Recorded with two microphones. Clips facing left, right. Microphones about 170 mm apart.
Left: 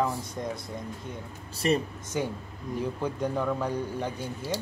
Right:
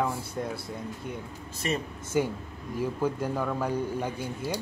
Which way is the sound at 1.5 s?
35° left (ahead or behind).